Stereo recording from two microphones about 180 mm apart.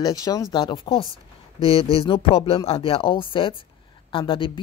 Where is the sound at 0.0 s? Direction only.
20° left (ahead or behind).